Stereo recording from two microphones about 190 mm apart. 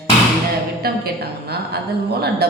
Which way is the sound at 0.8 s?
55° right (ahead or behind).